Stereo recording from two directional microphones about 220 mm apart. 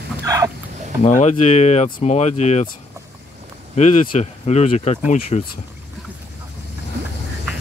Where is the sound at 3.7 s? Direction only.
35° left (ahead or behind).